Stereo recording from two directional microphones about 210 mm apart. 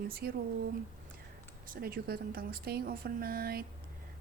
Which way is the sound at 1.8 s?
45° right (ahead or behind).